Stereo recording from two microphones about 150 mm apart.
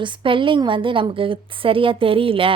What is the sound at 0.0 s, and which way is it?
A woman's voice, 35° right (ahead or behind).